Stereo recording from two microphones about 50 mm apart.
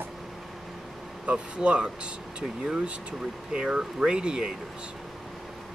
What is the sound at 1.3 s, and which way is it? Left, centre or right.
Speech, right.